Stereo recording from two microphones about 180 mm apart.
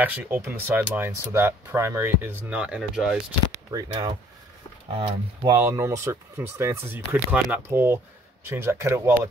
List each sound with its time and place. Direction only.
0.0 s speech: 10° right (ahead or behind)
3.7 s speech: 20° right (ahead or behind)